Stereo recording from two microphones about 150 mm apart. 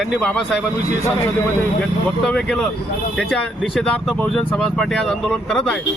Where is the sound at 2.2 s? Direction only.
5° left (ahead or behind).